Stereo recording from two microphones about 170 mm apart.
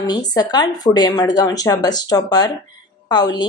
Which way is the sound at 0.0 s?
25° left (ahead or behind).